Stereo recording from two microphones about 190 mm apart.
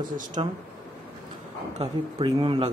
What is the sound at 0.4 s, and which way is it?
Speech, 30° right (ahead or behind).